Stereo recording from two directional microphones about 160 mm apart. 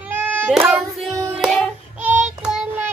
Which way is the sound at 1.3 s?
Centre (ahead or behind).